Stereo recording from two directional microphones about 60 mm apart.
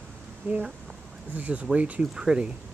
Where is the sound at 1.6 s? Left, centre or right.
Right.